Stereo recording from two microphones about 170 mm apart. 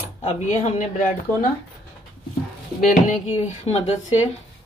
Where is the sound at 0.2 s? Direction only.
45° left (ahead or behind).